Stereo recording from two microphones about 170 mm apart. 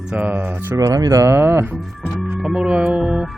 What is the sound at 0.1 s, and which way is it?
Speech, 10° right (ahead or behind).